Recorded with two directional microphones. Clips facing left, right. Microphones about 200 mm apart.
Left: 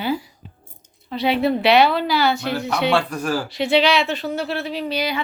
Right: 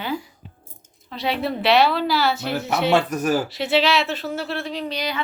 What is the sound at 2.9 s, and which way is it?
Speech, 20° right (ahead or behind).